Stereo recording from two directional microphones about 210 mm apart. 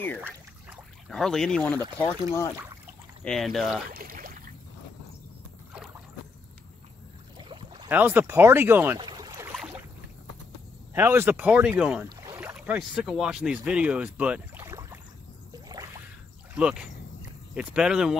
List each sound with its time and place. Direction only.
0.2 s speech: 5° right (ahead or behind)
3.3 s speech: centre (ahead or behind)
3.9 s speech: 45° right (ahead or behind)
7.3 s boat: 25° right (ahead or behind)
7.9 s speech: 10° right (ahead or behind)
9.0 s boat: 20° right (ahead or behind)
10.9 s speech: 10° right (ahead or behind)
16.5 s speech: 5° right (ahead or behind)